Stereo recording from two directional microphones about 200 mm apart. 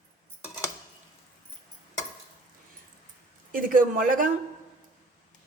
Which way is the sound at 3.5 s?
45° right (ahead or behind).